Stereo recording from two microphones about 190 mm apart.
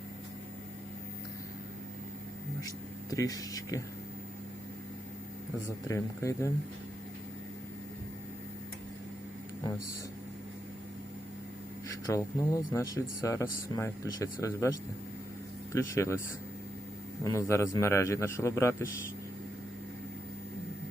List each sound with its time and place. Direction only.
2.6 s speech: 20° left (ahead or behind)
5.9 s a man's voice: 15° left (ahead or behind)
12.0 s a man's voice: 15° left (ahead or behind)
17.2 s a man's voice: 15° left (ahead or behind)